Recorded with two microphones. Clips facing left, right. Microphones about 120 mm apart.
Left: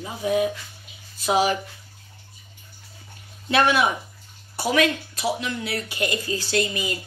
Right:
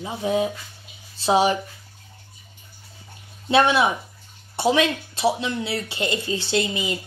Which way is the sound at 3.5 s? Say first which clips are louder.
Right 2 dB; 25° right (ahead or behind).